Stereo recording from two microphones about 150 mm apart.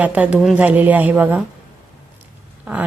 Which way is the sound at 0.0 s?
10° right (ahead or behind).